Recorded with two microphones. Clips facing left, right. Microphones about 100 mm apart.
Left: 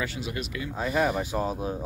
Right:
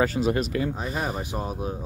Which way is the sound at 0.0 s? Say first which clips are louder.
Right 9 dB; 40° right (ahead or behind).